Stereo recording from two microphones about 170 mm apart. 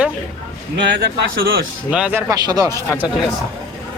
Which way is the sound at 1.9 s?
10° right (ahead or behind).